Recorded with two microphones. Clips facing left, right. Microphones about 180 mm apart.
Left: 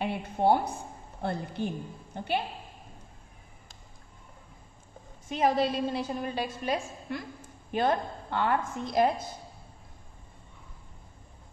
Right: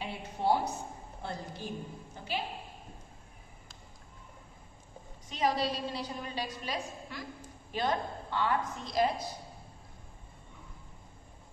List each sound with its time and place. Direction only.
0.0 s a sound: 55° left (ahead or behind)
1.2 s a woman's voice: 60° left (ahead or behind)
5.3 s a woman's voice: 50° left (ahead or behind)